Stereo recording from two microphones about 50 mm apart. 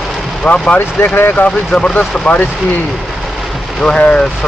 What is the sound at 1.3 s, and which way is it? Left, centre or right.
Speech, left.